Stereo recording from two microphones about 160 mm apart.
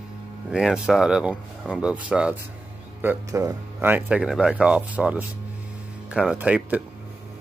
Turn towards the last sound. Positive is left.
turn(degrees=-10)  # may be behind; listen again after turning